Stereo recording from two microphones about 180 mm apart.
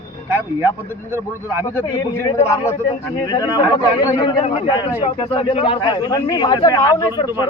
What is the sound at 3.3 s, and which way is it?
A man's voice, 20° left (ahead or behind).